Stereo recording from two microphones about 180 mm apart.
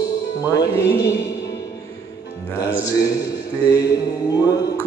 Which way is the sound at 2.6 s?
20° left (ahead or behind).